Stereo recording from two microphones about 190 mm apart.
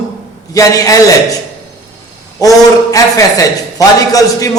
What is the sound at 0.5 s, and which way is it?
Speech, 15° left (ahead or behind).